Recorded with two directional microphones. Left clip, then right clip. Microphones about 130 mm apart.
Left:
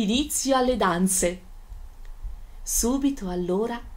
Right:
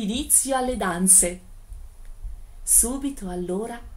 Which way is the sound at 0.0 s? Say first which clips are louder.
Left 2 dB; 15° left (ahead or behind).